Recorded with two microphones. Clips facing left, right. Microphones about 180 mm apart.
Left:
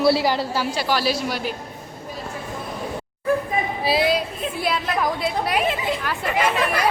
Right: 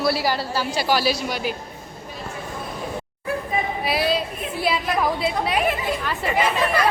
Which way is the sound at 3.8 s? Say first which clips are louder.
Left 6 dB; 30° left (ahead or behind).